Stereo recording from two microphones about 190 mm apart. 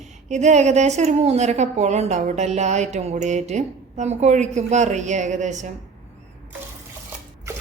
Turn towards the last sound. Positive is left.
turn(degrees=-40)  # may be behind; listen again after turning